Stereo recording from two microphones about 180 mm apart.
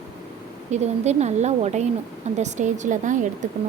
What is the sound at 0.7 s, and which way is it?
A woman's voice, 40° right (ahead or behind).